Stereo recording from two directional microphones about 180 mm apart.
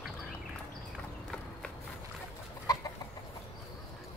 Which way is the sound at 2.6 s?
20° left (ahead or behind).